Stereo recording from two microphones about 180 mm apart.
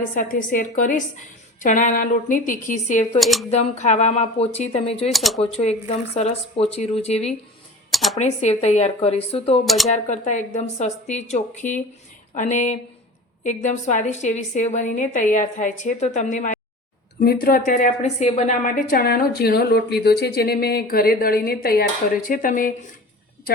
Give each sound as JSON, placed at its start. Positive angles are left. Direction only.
{"t": 0.1, "sound": "a woman's voice", "side_deg": 50}
{"t": 3.2, "sound": "speech", "side_deg": 0}
{"t": 3.5, "sound": "a woman's voice", "side_deg": 40}
{"t": 5.1, "sound": "speech", "side_deg": 0}
{"t": 5.4, "sound": "a woman's voice", "side_deg": 35}
{"t": 7.9, "sound": "speech", "side_deg": 0}
{"t": 8.2, "sound": "a woman's voice", "side_deg": 40}
{"t": 9.6, "sound": "speech", "side_deg": 0}
{"t": 9.9, "sound": "a woman's voice", "side_deg": 40}
{"t": 17.2, "sound": "a woman's voice", "side_deg": 55}